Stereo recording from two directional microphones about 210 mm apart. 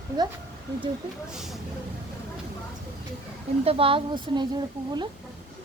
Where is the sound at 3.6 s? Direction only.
25° right (ahead or behind).